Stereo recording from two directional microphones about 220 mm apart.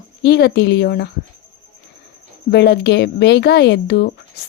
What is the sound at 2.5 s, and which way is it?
A woman's voice, 50° left (ahead or behind).